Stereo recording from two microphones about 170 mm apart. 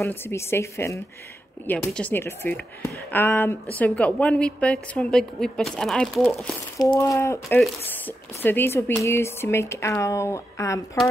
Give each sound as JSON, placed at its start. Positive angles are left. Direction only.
{"t": 0.0, "sound": "a woman's voice", "side_deg": 15}
{"t": 7.0, "sound": "speech", "side_deg": 15}
{"t": 7.4, "sound": "speech", "side_deg": 5}